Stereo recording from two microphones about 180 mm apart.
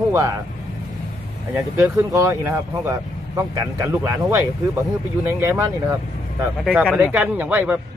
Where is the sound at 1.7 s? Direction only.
15° right (ahead or behind).